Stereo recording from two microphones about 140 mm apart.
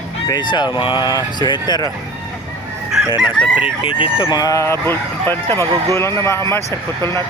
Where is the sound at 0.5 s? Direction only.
30° left (ahead or behind).